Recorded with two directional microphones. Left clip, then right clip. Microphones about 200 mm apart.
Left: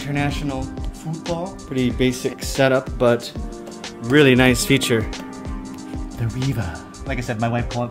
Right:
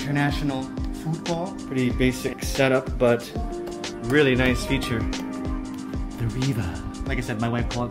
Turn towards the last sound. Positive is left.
turn(degrees=10)  # may be behind; listen again after turning